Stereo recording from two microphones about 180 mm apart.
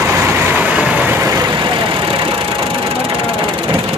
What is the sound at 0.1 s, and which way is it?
Vehicle, 15° right (ahead or behind).